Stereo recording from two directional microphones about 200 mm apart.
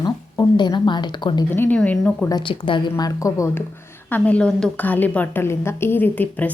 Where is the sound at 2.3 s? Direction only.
25° left (ahead or behind).